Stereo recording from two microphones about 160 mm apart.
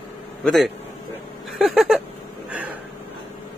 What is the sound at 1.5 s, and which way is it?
Speech, centre (ahead or behind).